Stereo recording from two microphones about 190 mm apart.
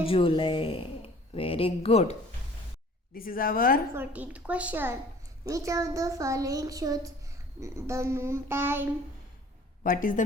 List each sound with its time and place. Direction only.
0.0 s speech: 30° left (ahead or behind)
3.2 s speech: 50° left (ahead or behind)
3.9 s speech: 10° right (ahead or behind)
9.8 s speech: 45° left (ahead or behind)